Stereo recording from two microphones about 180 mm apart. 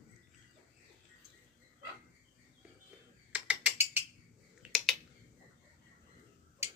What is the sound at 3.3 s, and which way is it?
Mechanisms, 5° right (ahead or behind).